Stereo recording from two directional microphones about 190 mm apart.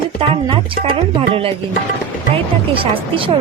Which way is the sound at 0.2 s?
30° right (ahead or behind).